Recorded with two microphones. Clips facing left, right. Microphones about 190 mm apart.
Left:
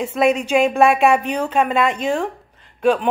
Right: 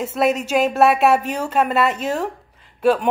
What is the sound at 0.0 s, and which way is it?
A woman's voice, 5° right (ahead or behind).